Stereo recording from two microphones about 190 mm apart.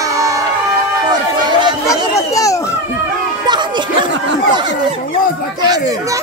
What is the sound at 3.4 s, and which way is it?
Music, 25° right (ahead or behind).